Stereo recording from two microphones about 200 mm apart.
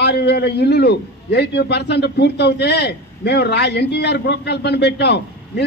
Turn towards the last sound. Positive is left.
turn(degrees=55)  # may be behind; listen again after turning